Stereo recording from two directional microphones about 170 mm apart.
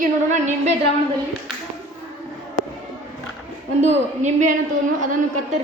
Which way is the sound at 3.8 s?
45° right (ahead or behind).